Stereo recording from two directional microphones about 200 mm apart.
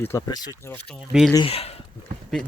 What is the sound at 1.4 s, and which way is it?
Speech, 30° left (ahead or behind).